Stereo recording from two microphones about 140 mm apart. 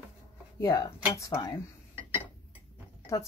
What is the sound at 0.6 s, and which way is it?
Speech, 25° left (ahead or behind).